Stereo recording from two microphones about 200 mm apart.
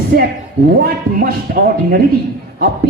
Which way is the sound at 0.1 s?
50° right (ahead or behind).